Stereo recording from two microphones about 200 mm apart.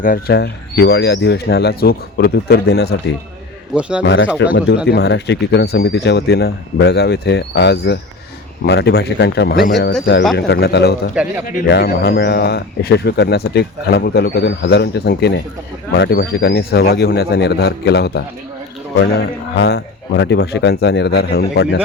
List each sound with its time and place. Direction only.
0.0 s speech: 50° left (ahead or behind)
3.8 s speech: 5° right (ahead or behind)
4.0 s speech: 65° left (ahead or behind)
11.1 s speech: 5° right (ahead or behind)
11.5 s speech: 55° left (ahead or behind)